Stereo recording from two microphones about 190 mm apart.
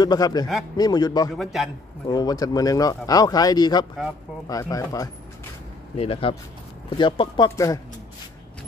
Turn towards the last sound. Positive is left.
turn(degrees=15)  # may be behind; listen again after turning